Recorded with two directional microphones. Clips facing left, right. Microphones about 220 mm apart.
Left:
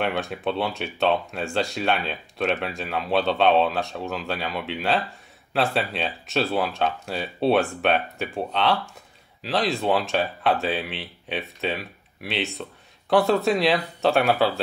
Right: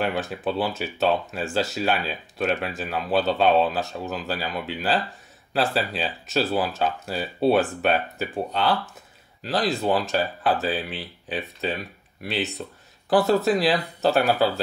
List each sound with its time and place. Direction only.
0.0 s speech: centre (ahead or behind)